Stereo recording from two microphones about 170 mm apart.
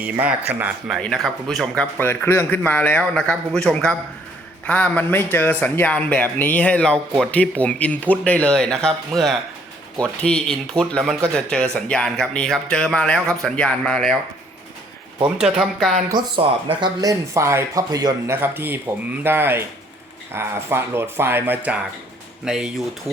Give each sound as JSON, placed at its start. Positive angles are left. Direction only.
{"t": 0.0, "sound": "a man's voice", "side_deg": -10}
{"t": 15.4, "sound": "speech", "side_deg": -5}
{"t": 16.0, "sound": "speech", "side_deg": -30}